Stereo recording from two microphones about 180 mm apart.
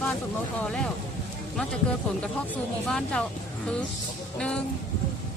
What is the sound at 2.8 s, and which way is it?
Speech, 5° left (ahead or behind).